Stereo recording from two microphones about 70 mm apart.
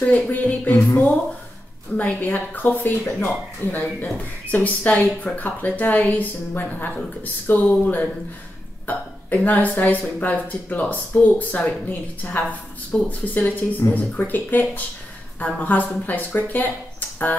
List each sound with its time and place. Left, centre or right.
0.0 s speech: left